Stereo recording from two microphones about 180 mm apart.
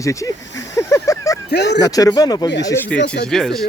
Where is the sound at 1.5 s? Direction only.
70° left (ahead or behind).